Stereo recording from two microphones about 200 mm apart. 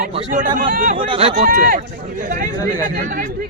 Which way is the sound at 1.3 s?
45° right (ahead or behind).